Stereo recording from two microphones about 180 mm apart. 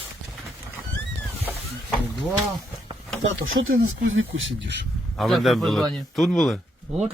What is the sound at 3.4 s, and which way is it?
Speech, 90° right.